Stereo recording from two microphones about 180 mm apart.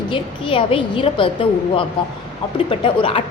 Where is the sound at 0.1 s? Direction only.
30° left (ahead or behind).